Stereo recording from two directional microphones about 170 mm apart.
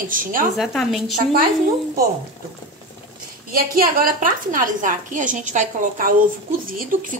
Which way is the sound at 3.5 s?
60° right (ahead or behind).